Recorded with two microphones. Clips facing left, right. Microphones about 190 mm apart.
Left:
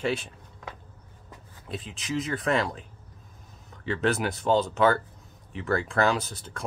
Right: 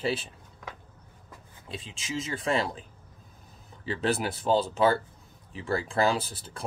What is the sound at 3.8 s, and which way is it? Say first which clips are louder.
Speech: left 2 dB; 35° right (ahead or behind).